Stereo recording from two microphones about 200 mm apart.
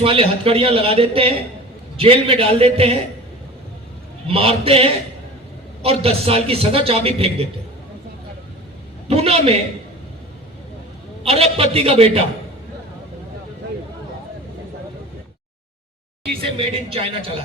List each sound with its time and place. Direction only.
0.0 s a man's voice: 30° right (ahead or behind)
4.3 s a man's voice: 30° right (ahead or behind)
9.0 s a man's voice: 30° right (ahead or behind)
11.2 s a man's voice: 30° right (ahead or behind)
16.4 s a man's voice: 30° right (ahead or behind)